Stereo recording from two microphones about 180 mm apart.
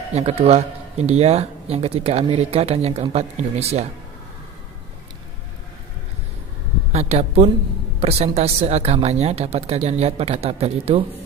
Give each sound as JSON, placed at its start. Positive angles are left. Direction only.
{"t": 0.1, "sound": "speech", "side_deg": -35}
{"t": 6.9, "sound": "speech", "side_deg": -35}